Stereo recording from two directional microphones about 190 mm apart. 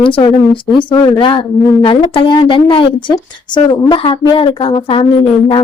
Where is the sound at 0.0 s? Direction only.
25° left (ahead or behind).